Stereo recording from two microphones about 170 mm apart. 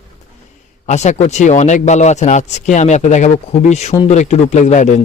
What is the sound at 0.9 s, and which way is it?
Speech, 45° left (ahead or behind).